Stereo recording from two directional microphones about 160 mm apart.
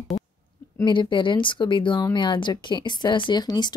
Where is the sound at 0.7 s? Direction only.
30° left (ahead or behind).